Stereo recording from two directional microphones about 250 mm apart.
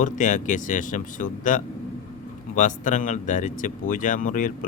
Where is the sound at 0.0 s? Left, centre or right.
Left.